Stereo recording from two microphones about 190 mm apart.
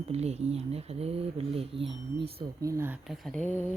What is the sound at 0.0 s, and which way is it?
Speech, 35° right (ahead or behind).